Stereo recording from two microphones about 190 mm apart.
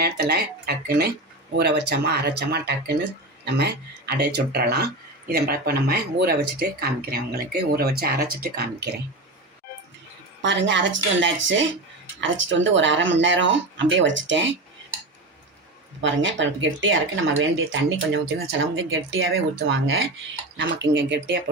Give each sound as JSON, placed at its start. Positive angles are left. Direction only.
{"t": 0.0, "sound": "speech", "side_deg": -55}
{"t": 10.4, "sound": "speech", "side_deg": -70}
{"t": 16.0, "sound": "speech", "side_deg": -75}
{"t": 20.6, "sound": "speech", "side_deg": -70}